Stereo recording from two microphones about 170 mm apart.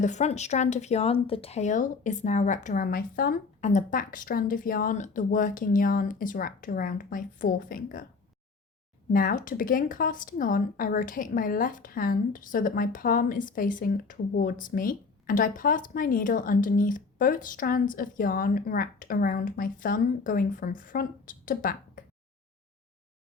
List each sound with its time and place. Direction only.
0.0 s speech: 45° left (ahead or behind); by 3.3 s 60° left (ahead or behind)
3.6 s speech: 45° left (ahead or behind)
9.1 s speech: 55° left (ahead or behind)